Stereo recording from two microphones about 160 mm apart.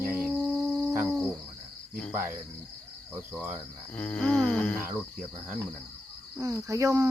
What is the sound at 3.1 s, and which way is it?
Speech, 10° right (ahead or behind).